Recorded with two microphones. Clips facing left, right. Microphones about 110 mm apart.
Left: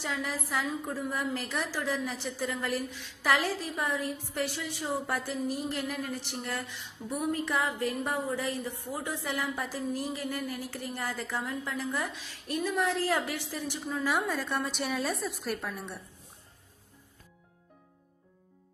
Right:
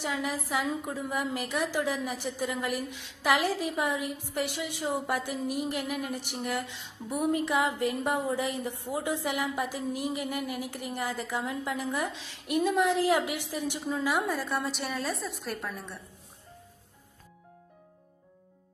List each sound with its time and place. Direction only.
0.0 s a woman's voice: 15° right (ahead or behind); by 15.9 s centre (ahead or behind)